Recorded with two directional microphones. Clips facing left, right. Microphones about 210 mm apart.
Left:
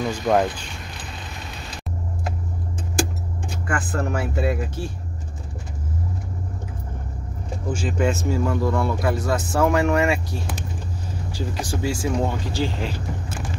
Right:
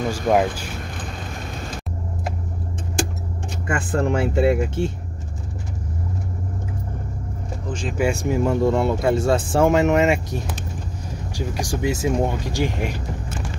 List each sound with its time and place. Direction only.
0.1 s speech: 10° right (ahead or behind)
3.6 s speech: 25° right (ahead or behind)
8.0 s speech: 15° right (ahead or behind)